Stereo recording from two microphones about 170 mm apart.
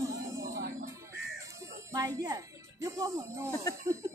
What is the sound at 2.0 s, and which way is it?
Speech, 20° right (ahead or behind).